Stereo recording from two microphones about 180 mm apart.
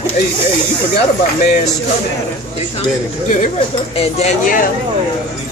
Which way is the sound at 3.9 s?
40° left (ahead or behind).